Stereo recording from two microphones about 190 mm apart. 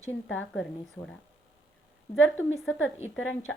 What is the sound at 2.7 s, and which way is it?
Speech, 90° left.